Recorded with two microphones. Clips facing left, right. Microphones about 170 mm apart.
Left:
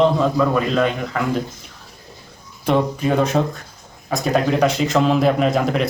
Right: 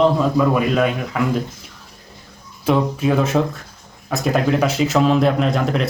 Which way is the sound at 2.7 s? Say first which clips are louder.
Right 1 dB; centre (ahead or behind).